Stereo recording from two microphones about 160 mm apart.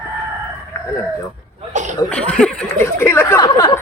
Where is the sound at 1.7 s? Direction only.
50° right (ahead or behind).